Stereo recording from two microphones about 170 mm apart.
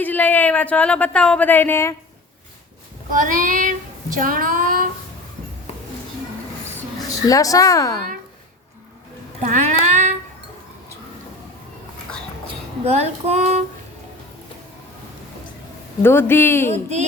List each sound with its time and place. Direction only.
0.0 s speech: 10° left (ahead or behind)
3.1 s child singing: 50° right (ahead or behind)
7.3 s a woman's voice: 20° left (ahead or behind)
9.4 s a sound: 45° right (ahead or behind)
12.8 s music: 40° right (ahead or behind)
16.0 s speech: 15° left (ahead or behind)